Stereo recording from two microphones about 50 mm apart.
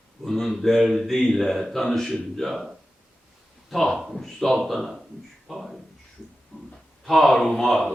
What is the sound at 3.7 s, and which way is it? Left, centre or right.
Speech, centre.